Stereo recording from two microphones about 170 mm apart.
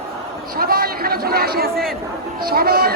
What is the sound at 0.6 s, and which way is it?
A man's voice, 60° right (ahead or behind).